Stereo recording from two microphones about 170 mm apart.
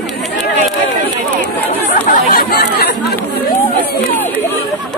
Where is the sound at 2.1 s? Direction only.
55° left (ahead or behind).